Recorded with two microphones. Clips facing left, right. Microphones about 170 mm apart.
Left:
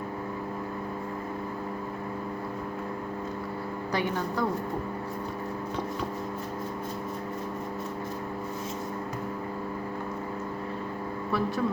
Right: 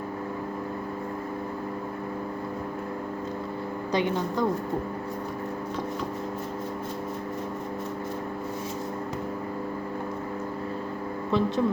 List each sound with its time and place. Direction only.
3.9 s speech: 20° right (ahead or behind)
11.3 s speech: 20° right (ahead or behind)